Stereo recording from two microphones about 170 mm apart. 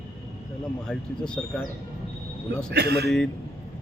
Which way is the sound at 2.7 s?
75° right (ahead or behind).